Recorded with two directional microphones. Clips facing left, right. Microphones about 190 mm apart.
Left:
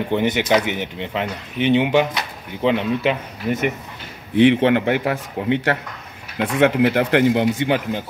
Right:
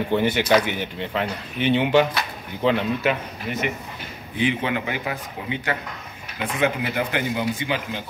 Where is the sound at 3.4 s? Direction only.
40° left (ahead or behind).